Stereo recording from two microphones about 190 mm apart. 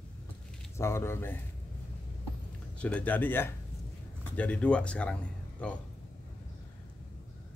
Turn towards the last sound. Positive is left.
turn(degrees=5)  # may be behind; listen again after turning